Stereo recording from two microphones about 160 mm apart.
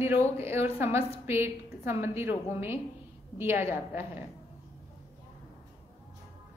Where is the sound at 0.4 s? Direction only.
15° right (ahead or behind).